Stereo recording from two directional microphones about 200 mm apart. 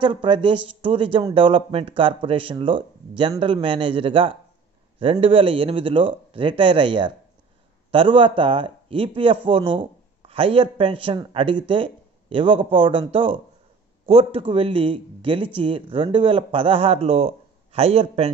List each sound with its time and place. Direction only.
0.0 s speech: 25° right (ahead or behind)